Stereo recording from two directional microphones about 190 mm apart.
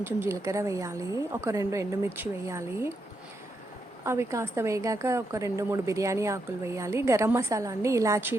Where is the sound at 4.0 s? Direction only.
15° right (ahead or behind).